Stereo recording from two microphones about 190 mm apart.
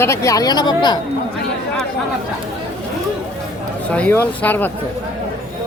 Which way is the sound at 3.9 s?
10° left (ahead or behind).